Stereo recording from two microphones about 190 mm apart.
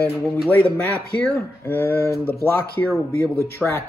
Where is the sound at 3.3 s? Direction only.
15° left (ahead or behind).